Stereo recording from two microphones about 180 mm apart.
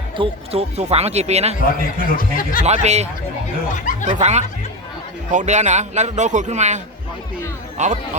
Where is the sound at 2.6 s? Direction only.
40° right (ahead or behind).